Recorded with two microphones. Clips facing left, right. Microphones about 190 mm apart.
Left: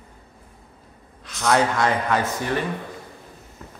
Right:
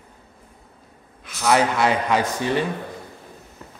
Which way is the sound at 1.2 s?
5° right (ahead or behind).